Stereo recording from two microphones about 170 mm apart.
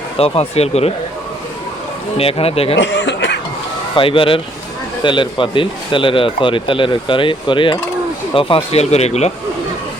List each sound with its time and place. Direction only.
0.2 s speech: 35° left (ahead or behind)
2.1 s speech: 35° left (ahead or behind)
2.7 s snicker: 90° left
3.9 s speech: 30° left (ahead or behind)